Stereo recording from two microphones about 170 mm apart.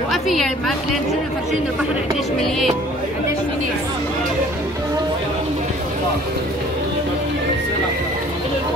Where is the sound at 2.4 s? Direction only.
Centre (ahead or behind).